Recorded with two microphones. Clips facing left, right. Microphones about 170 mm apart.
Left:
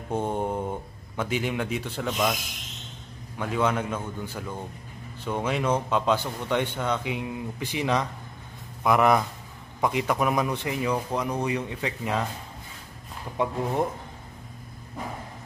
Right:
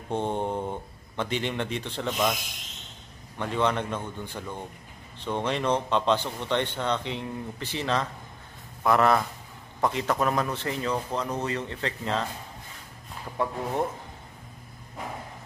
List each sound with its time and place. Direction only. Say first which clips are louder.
0.1 s a man's voice: left 1 dB; 5° left (ahead or behind)
3.3 s a man's voice: left 1 dB; 5° left (ahead or behind)
13.4 s speech: left 2 dB; 20° left (ahead or behind)